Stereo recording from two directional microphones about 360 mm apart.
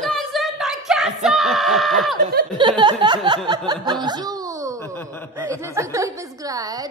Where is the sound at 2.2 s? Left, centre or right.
Centre.